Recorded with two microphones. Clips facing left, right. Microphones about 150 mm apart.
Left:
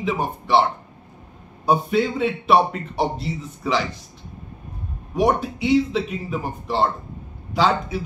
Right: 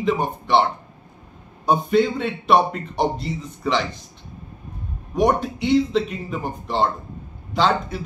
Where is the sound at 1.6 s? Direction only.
5° left (ahead or behind).